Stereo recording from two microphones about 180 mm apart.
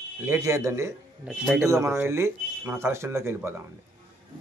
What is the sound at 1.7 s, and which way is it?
A man's voice, 15° right (ahead or behind).